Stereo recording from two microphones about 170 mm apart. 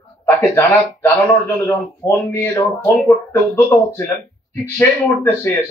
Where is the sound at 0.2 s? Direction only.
15° left (ahead or behind).